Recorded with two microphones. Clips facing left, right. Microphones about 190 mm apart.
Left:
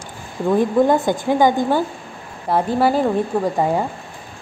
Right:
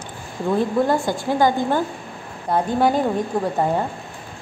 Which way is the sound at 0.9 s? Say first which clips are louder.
Left 3 dB; 20° left (ahead or behind).